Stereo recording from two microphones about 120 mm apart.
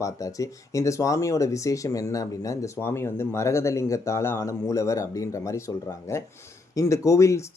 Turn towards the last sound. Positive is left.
turn(degrees=25)  # may be behind; listen again after turning